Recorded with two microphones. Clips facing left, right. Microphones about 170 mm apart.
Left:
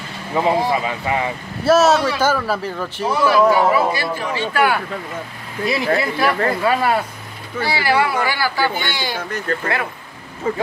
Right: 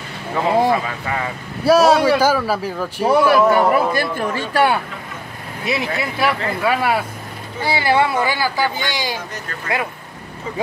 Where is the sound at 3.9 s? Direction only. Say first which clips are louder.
Right 2 dB; 50° right (ahead or behind).